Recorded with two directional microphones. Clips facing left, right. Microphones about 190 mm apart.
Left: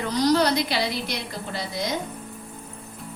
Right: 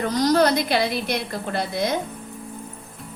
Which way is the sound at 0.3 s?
50° right (ahead or behind).